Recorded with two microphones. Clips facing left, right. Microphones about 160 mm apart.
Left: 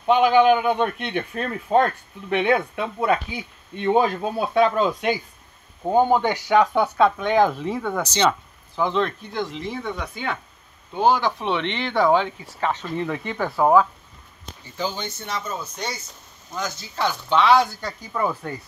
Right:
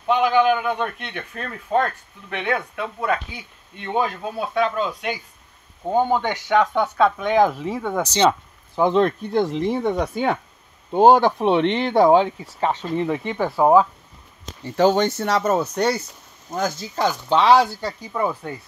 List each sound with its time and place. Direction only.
0.0 s speech: 25° left (ahead or behind)
5.9 s speech: 5° left (ahead or behind); by 8.1 s 15° right (ahead or behind)
8.1 s a sound: 30° right (ahead or behind)
8.8 s speech: 45° right (ahead or behind); by 9.8 s 60° right (ahead or behind)
9.8 s speech: 40° right (ahead or behind)
11.0 s speech: 60° right (ahead or behind); by 13.8 s 20° right (ahead or behind)
14.4 s speech: 70° right (ahead or behind)
16.4 s speech: 45° right (ahead or behind)
17.3 s speech: 35° right (ahead or behind)
18.4 s speech: 15° right (ahead or behind)